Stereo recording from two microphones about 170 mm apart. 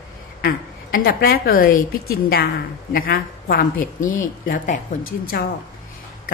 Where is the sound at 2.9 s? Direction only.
60° left (ahead or behind).